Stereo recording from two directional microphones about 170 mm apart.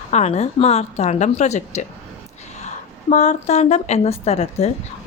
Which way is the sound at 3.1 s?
40° left (ahead or behind).